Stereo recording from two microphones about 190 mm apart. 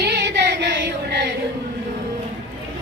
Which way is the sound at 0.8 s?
65° right (ahead or behind).